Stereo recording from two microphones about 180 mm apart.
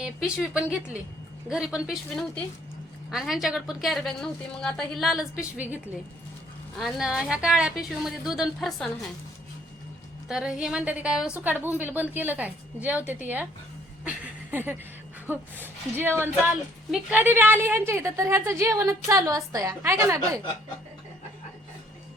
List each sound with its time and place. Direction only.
0.5 s a woman's voice: 5° right (ahead or behind)
10.2 s a woman's voice: 5° right (ahead or behind)